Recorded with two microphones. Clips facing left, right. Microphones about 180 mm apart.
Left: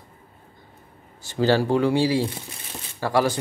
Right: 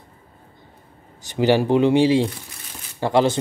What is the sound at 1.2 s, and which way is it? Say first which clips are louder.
Speech: right 2 dB; 15° right (ahead or behind).